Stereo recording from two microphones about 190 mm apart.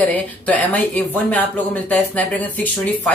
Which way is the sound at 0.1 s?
10° left (ahead or behind).